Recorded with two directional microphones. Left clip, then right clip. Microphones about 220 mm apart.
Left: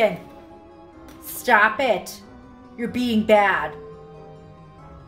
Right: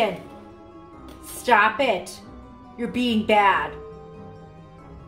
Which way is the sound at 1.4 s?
50° left (ahead or behind).